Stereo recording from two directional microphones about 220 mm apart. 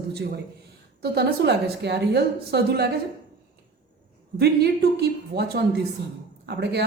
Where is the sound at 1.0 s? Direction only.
50° right (ahead or behind).